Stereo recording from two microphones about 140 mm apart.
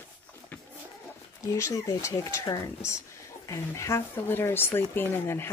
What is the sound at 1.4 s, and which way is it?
Speech, 20° left (ahead or behind).